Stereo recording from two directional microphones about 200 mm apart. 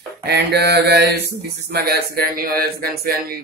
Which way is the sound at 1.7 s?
50° right (ahead or behind).